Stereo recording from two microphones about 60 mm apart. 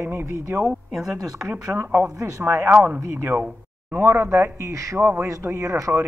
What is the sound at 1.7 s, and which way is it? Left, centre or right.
Speech, right.